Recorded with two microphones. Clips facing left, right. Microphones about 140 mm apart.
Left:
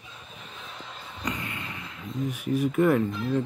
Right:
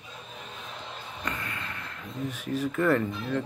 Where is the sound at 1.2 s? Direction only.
20° left (ahead or behind).